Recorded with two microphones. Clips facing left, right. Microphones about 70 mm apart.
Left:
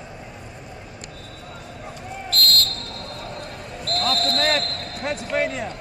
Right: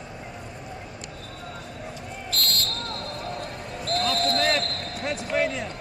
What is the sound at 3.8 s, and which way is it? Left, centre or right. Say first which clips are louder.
Basketball bounce: left 1 dB; left.